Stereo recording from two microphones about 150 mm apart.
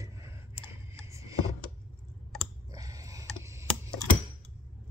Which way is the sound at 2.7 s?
20° right (ahead or behind).